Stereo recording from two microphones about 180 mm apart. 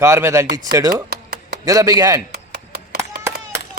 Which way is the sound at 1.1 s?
60° right (ahead or behind).